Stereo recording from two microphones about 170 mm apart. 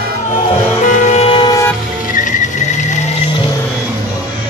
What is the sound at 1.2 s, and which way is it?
Vehicle, 30° left (ahead or behind).